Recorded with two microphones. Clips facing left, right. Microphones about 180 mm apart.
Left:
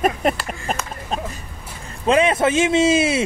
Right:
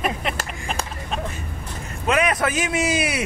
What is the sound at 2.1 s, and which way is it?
A man's voice, 25° left (ahead or behind).